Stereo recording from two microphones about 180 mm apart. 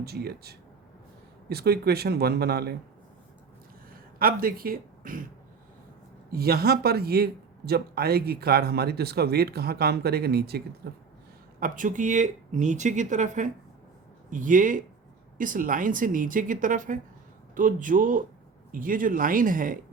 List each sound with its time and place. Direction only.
0.0 s speech: 60° right (ahead or behind)
4.2 s speech: 55° right (ahead or behind)
6.3 s speech: 60° right (ahead or behind)
11.6 s speech: 45° right (ahead or behind)